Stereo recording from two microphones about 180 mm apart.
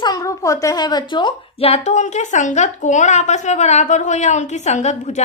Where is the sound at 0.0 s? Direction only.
20° left (ahead or behind).